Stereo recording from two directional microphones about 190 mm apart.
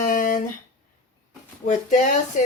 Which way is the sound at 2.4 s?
45° left (ahead or behind).